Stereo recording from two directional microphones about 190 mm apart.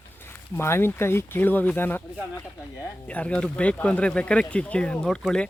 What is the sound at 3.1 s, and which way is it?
Speech, 5° left (ahead or behind).